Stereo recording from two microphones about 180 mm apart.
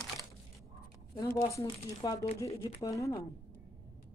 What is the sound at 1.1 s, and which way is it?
Speech, 15° left (ahead or behind).